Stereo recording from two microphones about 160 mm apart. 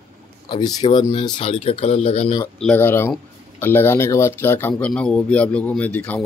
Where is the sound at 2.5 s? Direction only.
10° left (ahead or behind).